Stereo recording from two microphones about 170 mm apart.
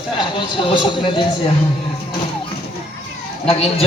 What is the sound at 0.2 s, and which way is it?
Speech, 30° left (ahead or behind).